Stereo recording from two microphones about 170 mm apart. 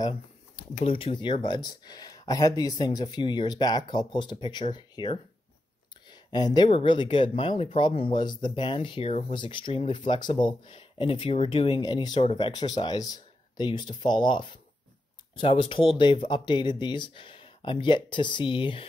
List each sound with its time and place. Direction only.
0.6 s speech: 35° left (ahead or behind)